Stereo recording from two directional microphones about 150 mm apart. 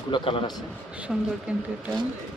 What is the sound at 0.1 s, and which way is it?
Speech, 35° left (ahead or behind).